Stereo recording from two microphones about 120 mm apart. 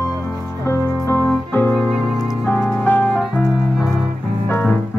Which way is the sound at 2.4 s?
15° left (ahead or behind).